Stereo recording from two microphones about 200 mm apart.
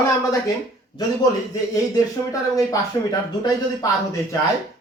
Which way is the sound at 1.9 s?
15° left (ahead or behind).